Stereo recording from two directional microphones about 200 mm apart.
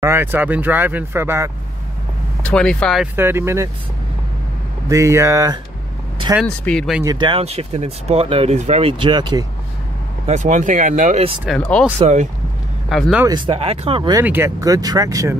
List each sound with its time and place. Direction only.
0.0 s speech: 10° right (ahead or behind)
2.4 s speech: 5° left (ahead or behind)
3.2 s speech: 10° right (ahead or behind)
4.8 s speech: 15° right (ahead or behind)
6.4 s speech: 5° left (ahead or behind)
7.0 s speech: 20° right (ahead or behind)
10.2 s speech: 35° right (ahead or behind)
11.4 s speech: 5° left (ahead or behind)
12.9 s speech: centre (ahead or behind)
13.2 s speech: 25° right (ahead or behind)
14.2 s speech: 10° right (ahead or behind)